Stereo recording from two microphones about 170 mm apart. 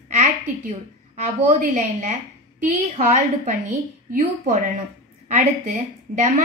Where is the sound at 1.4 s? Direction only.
45° right (ahead or behind).